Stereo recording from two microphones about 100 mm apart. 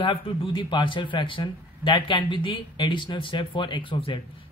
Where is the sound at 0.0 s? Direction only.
60° left (ahead or behind).